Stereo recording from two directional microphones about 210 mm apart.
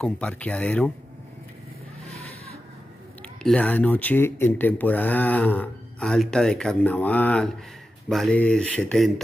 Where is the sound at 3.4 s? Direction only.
5° left (ahead or behind).